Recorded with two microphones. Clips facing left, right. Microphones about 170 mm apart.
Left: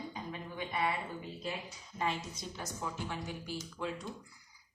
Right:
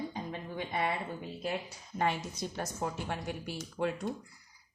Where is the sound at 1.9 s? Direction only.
65° right (ahead or behind).